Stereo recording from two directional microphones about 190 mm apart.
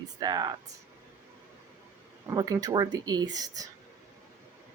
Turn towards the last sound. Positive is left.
turn(degrees=-20)  # may be behind; listen again after turning